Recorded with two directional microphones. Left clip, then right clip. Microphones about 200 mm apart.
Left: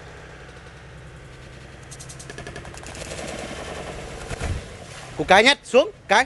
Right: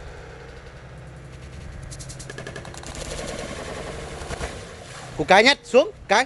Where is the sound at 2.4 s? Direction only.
Centre (ahead or behind).